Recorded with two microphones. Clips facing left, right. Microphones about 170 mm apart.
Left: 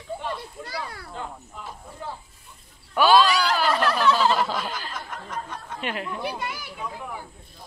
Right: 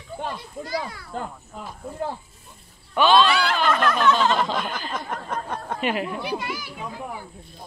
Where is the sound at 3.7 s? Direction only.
35° left (ahead or behind).